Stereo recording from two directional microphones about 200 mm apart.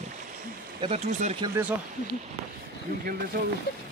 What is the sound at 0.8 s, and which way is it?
Speech, 30° right (ahead or behind).